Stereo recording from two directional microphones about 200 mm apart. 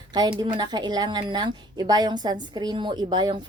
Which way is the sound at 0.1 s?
20° right (ahead or behind).